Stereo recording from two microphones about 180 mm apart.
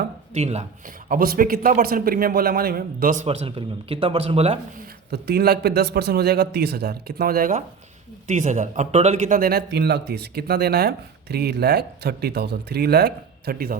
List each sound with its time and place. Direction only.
0.3 s speech: 35° right (ahead or behind)
1.0 s a man's voice: 55° right (ahead or behind)
3.2 s speech: 35° right (ahead or behind)
5.1 s speech: 60° right (ahead or behind)